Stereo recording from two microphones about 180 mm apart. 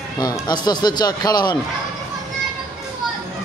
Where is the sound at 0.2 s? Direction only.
20° left (ahead or behind).